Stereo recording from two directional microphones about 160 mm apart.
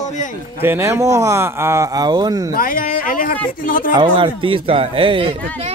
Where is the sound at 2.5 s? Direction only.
60° left (ahead or behind).